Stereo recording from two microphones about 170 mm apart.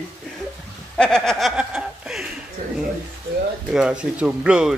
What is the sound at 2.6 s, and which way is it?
Speech, 50° right (ahead or behind).